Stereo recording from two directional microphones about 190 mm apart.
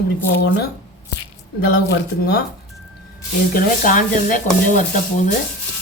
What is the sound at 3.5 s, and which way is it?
Speech, 45° left (ahead or behind).